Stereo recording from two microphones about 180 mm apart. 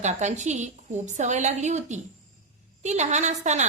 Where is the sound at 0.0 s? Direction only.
40° right (ahead or behind).